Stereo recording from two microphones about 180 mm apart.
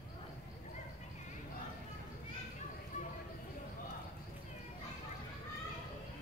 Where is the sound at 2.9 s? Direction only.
40° left (ahead or behind).